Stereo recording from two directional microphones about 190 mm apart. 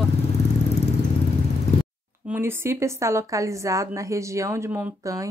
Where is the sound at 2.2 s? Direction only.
10° right (ahead or behind).